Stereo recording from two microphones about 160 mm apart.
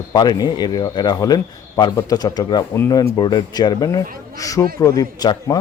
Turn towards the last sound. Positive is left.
turn(degrees=25)  # may be behind; listen again after turning